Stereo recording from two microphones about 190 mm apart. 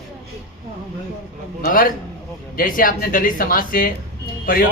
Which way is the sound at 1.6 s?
45° left (ahead or behind).